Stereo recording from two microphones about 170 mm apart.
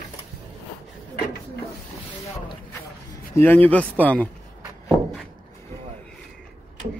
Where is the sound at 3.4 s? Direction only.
10° left (ahead or behind).